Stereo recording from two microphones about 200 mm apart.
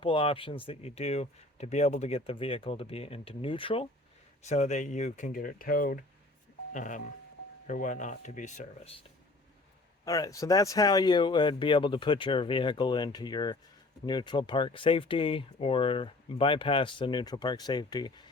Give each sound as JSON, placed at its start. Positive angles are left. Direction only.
{"t": 0.0, "sound": "speech", "side_deg": 25}
{"t": 10.0, "sound": "speech", "side_deg": 15}